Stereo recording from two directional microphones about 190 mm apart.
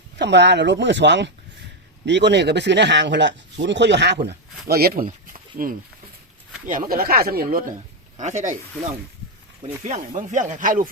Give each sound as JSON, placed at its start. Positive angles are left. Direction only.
{"t": 0.2, "sound": "speech", "side_deg": -65}
{"t": 8.2, "sound": "speech", "side_deg": -40}
{"t": 9.8, "sound": "speech", "side_deg": -40}